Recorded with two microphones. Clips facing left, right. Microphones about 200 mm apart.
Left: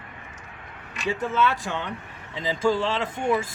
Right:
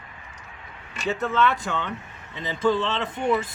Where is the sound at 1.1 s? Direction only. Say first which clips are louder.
Right 1 dB; 10° left (ahead or behind).